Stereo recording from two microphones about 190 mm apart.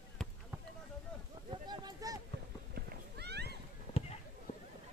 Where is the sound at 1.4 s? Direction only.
25° right (ahead or behind).